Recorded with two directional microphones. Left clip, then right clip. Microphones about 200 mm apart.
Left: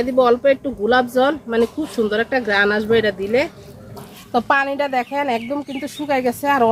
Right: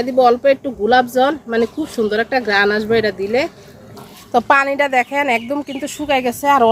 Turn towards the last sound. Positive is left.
turn(degrees=-30)  # may be behind; listen again after turning